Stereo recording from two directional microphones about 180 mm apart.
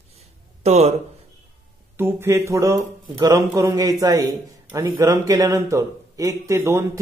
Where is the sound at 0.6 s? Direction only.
35° right (ahead or behind).